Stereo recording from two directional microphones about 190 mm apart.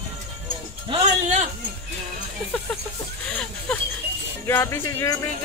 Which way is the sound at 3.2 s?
5° left (ahead or behind).